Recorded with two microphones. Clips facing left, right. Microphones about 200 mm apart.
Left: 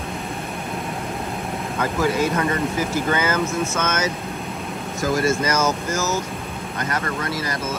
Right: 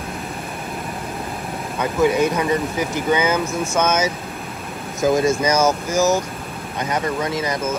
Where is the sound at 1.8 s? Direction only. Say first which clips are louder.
Right 4 dB; 15° right (ahead or behind).